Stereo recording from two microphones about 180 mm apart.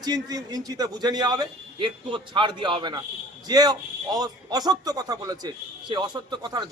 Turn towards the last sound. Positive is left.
turn(degrees=-20)  # may be behind; listen again after turning